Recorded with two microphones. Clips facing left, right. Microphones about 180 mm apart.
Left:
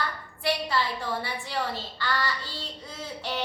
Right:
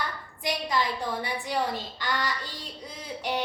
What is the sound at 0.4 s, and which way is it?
A woman's voice, 15° right (ahead or behind).